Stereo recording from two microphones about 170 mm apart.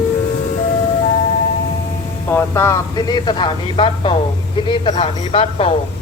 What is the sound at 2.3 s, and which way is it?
Speech, 15° left (ahead or behind).